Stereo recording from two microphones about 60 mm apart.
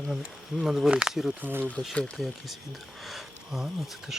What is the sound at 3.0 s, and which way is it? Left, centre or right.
Speech, centre.